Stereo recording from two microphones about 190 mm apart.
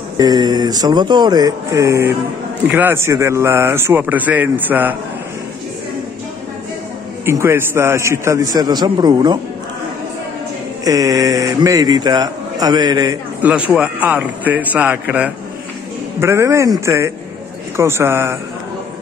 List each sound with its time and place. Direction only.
0.2 s a man's voice: 20° right (ahead or behind)
7.2 s a man's voice: 15° right (ahead or behind)
10.8 s a man's voice: 20° right (ahead or behind)
13.4 s a man's voice: 5° right (ahead or behind)